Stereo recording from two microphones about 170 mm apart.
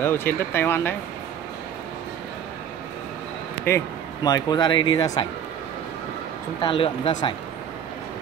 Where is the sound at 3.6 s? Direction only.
20° left (ahead or behind).